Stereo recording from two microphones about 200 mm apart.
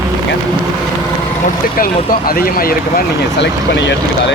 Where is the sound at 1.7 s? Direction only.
45° left (ahead or behind).